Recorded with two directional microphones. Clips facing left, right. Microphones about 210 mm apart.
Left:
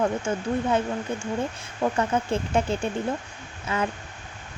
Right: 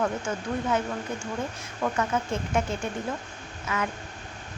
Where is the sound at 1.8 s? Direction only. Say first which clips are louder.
Left 3 dB; 30° left (ahead or behind).